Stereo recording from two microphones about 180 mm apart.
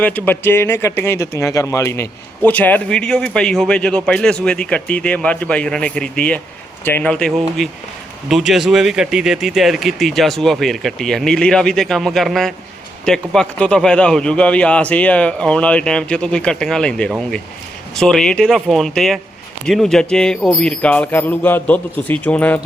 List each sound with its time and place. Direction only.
0.0 s a man's voice: 10° left (ahead or behind)